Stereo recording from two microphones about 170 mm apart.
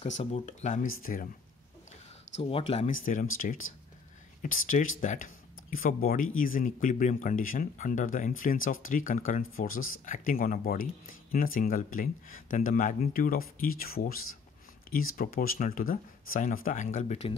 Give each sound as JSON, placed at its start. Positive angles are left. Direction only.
{"t": 0.0, "sound": "speech", "side_deg": 40}
{"t": 2.4, "sound": "speech", "side_deg": 35}
{"t": 2.9, "sound": "speech", "side_deg": 50}